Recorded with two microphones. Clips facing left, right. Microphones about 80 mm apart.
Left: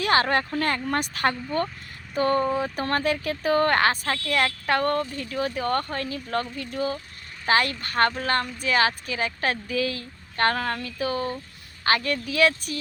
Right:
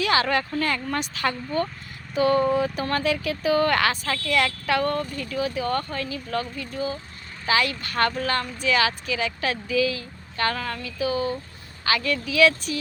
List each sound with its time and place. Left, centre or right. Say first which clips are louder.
0.0 s a woman's voice: even; left
2.7 s a woman's voice: even; left
7.4 s a woman's voice: left 1 dB; left